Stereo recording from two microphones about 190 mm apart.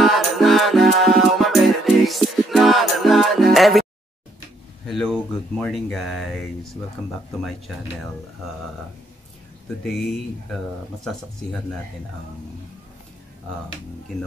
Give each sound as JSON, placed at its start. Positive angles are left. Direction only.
{"t": 0.0, "sound": "a capella", "side_deg": 0}
{"t": 4.8, "sound": "speech", "side_deg": 5}
{"t": 9.8, "sound": "speech", "side_deg": 0}